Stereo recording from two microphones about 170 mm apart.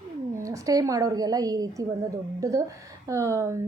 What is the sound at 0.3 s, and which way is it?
A woman's voice, 20° right (ahead or behind).